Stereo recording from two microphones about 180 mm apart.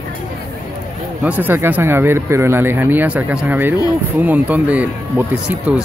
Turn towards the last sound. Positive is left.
turn(degrees=-10)  # may be behind; listen again after turning